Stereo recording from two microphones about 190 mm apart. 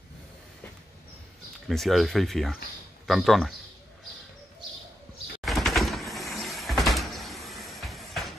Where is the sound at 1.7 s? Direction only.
Centre (ahead or behind).